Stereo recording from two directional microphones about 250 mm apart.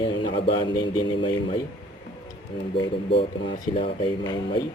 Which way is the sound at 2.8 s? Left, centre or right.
Centre.